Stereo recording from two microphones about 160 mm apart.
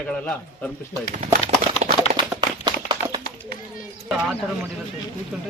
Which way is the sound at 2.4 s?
30° right (ahead or behind).